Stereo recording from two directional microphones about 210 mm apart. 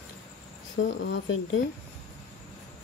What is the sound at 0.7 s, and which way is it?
Speech, 60° left (ahead or behind).